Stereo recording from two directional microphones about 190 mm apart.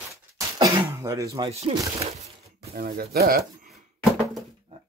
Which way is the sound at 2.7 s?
50° right (ahead or behind).